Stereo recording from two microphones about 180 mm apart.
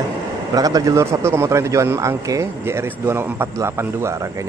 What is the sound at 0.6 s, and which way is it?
A man's voice, 20° right (ahead or behind).